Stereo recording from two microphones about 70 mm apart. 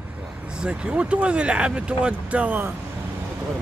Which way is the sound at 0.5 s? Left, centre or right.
Centre.